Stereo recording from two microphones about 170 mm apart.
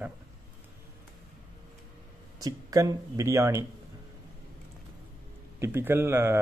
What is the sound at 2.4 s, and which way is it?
Speech, 20° right (ahead or behind).